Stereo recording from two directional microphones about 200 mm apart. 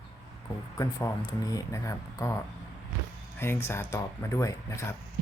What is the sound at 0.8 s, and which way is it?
Speech, 15° left (ahead or behind).